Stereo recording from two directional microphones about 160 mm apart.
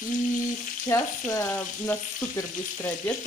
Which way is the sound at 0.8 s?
15° left (ahead or behind).